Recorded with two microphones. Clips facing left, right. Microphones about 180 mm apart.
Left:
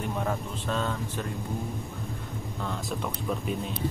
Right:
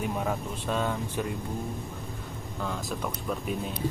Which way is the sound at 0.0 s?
5° right (ahead or behind).